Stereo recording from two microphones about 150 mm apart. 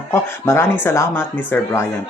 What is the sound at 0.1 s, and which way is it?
Speech, 15° left (ahead or behind).